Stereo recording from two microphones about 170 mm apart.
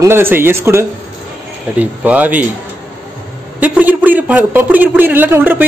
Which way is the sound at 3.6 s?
10° right (ahead or behind).